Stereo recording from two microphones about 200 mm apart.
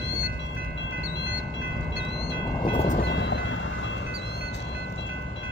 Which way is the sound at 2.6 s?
30° left (ahead or behind).